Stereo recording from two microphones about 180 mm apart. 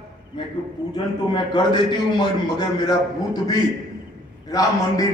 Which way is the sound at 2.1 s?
25° left (ahead or behind).